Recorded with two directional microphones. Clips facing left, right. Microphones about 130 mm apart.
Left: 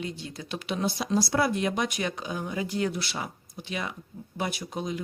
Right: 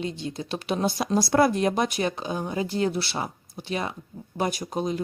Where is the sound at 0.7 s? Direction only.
45° right (ahead or behind).